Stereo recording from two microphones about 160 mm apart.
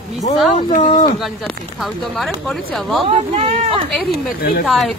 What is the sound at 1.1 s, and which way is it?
Speech, centre (ahead or behind).